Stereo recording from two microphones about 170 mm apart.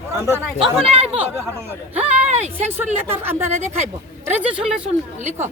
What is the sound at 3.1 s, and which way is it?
Speech, 15° right (ahead or behind).